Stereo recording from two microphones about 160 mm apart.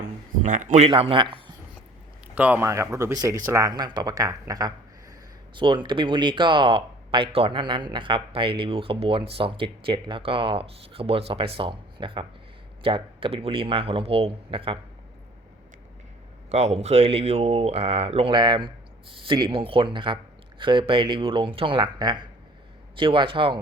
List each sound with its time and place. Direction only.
0.4 s a man's voice: 50° right (ahead or behind)
0.9 s speech: 35° right (ahead or behind)
2.3 s speech: 10° right (ahead or behind); by 14.8 s 35° right (ahead or behind)
16.5 s speech: 45° right (ahead or behind)